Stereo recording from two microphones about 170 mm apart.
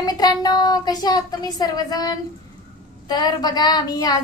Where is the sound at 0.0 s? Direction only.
25° left (ahead or behind).